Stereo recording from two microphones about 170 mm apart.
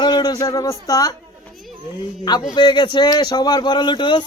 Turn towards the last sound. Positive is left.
turn(degrees=30)  # may be behind; listen again after turning